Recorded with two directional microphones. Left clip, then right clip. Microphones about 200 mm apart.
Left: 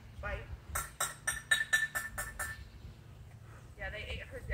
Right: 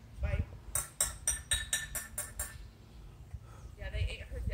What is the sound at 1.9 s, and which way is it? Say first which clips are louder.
Music: left 6 dB; 10° left (ahead or behind).